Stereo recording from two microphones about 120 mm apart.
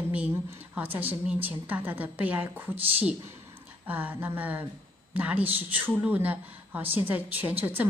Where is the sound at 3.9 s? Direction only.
15° right (ahead or behind).